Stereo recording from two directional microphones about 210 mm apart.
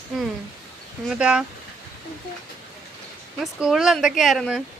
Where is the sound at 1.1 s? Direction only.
5° right (ahead or behind).